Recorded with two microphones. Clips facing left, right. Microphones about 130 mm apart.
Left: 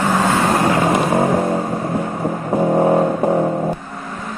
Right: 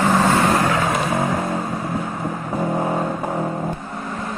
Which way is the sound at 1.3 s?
50° left (ahead or behind).